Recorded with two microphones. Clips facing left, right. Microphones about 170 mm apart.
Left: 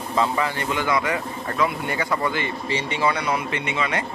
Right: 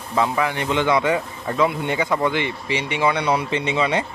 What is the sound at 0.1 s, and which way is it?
Speech, 10° right (ahead or behind).